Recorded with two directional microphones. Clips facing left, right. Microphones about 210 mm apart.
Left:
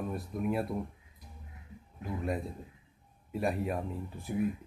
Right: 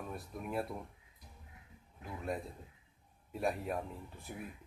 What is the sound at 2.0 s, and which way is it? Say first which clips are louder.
Speech: left 5 dB; centre (ahead or behind).